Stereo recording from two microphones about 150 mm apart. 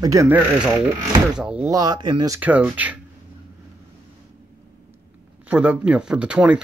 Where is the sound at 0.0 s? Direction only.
20° right (ahead or behind).